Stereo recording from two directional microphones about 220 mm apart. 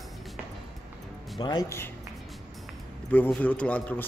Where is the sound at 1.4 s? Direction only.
15° left (ahead or behind).